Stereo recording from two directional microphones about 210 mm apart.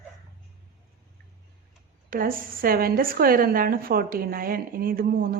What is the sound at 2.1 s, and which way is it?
A woman's voice, 40° right (ahead or behind).